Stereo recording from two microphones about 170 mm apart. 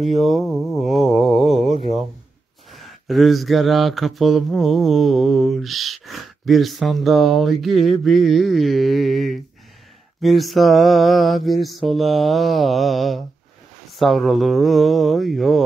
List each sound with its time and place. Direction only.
0.2 s speech: centre (ahead or behind)
2.7 s mantra: centre (ahead or behind)